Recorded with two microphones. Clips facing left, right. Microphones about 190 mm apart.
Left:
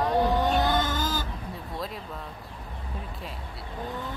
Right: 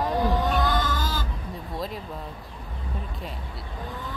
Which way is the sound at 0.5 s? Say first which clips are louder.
Even; 25° left (ahead or behind).